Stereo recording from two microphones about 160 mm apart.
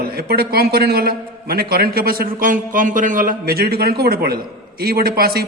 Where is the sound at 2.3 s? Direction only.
55° right (ahead or behind).